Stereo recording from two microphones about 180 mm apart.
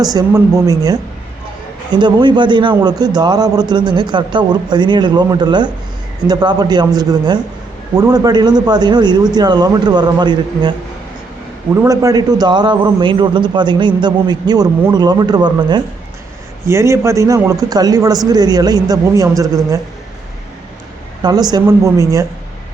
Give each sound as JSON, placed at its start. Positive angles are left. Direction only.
{"t": 0.0, "sound": "a man's voice", "side_deg": -20}
{"t": 21.2, "sound": "a man's voice", "side_deg": -20}